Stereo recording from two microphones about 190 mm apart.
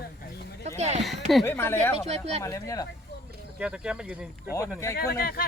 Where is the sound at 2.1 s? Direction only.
35° right (ahead or behind).